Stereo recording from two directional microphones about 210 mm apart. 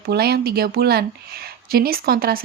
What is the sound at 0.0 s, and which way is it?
Speech, 50° right (ahead or behind).